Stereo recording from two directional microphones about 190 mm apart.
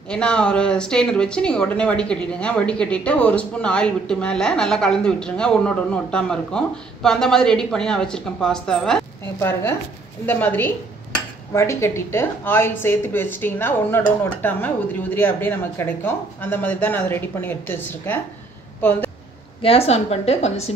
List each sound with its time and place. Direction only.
0.1 s speech: 5° left (ahead or behind)
19.6 s a woman's voice: 30° left (ahead or behind)